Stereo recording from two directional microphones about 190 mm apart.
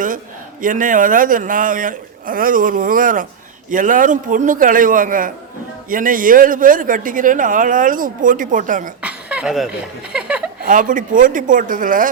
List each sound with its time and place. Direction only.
0.6 s speech: 45° right (ahead or behind)
9.0 s chuckle: 5° right (ahead or behind)
10.6 s speech: 45° right (ahead or behind)